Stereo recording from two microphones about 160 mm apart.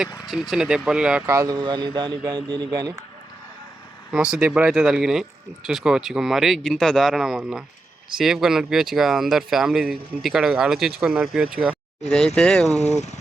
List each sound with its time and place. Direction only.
0.3 s speech: centre (ahead or behind)
1.3 s speech: 20° right (ahead or behind)
4.1 s speech: 5° right (ahead or behind)
12.0 s speech: 5° left (ahead or behind)